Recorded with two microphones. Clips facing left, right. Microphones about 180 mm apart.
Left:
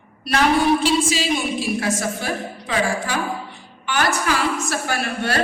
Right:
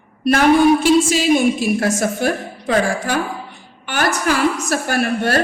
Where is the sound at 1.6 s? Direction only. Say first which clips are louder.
Right 5 dB; 50° right (ahead or behind).